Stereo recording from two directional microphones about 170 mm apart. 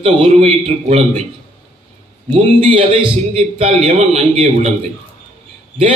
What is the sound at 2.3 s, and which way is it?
Speech, 30° right (ahead or behind).